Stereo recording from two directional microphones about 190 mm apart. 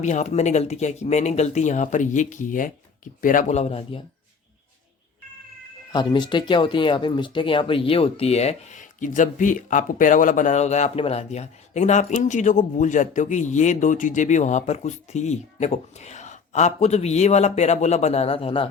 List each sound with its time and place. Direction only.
0.0 s speech: 40° left (ahead or behind)
5.9 s speech: 25° left (ahead or behind)